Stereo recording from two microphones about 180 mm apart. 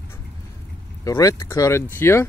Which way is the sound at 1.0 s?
20° left (ahead or behind).